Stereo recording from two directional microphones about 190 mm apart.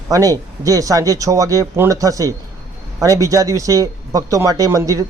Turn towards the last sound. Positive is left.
turn(degrees=-15)  # may be behind; listen again after turning